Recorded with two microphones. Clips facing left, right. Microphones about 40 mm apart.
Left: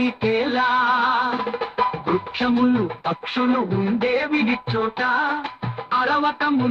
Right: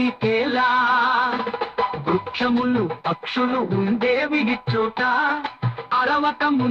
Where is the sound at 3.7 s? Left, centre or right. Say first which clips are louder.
Right 1 dB; right.